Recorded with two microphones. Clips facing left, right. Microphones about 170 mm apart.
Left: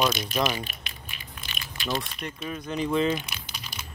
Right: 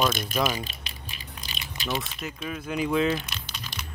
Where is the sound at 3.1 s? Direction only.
10° left (ahead or behind).